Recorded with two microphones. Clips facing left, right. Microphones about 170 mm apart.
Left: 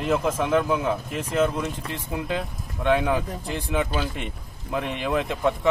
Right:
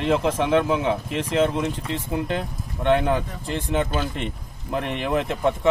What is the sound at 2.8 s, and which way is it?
Speech, 10° left (ahead or behind).